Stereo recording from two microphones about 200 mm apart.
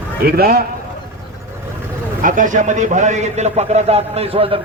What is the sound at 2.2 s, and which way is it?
A man's voice, 40° right (ahead or behind).